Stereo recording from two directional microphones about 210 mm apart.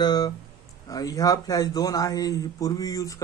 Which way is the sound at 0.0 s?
20° left (ahead or behind).